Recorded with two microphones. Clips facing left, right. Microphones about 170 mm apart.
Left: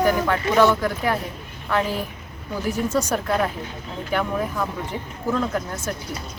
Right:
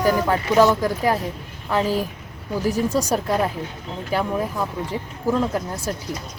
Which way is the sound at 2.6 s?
35° right (ahead or behind).